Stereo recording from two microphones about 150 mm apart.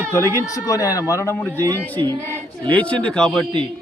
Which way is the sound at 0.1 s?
20° left (ahead or behind).